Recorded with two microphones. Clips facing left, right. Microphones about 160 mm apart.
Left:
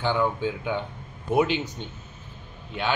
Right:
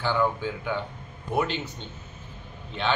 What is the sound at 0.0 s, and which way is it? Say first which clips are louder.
Speech: left 1 dB; 15° left (ahead or behind).